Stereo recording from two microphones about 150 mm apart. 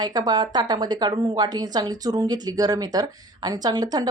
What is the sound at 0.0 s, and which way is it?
A woman's voice, 30° right (ahead or behind).